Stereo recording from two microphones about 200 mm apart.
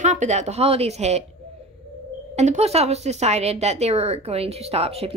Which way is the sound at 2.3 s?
35° right (ahead or behind).